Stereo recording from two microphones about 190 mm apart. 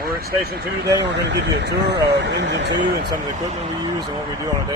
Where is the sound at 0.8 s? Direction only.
65° right (ahead or behind).